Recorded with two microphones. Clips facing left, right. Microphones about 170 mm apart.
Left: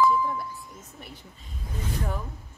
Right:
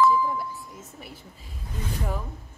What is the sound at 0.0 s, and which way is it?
Doorbell, centre (ahead or behind).